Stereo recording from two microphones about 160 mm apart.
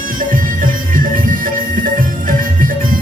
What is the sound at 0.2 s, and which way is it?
Music, 60° right (ahead or behind).